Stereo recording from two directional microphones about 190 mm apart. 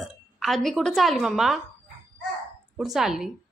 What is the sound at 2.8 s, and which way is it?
Speech, centre (ahead or behind).